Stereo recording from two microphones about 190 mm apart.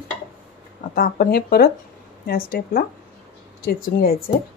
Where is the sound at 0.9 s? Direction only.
50° left (ahead or behind).